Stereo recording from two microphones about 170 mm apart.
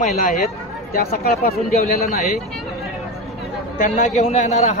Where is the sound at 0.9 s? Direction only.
65° left (ahead or behind).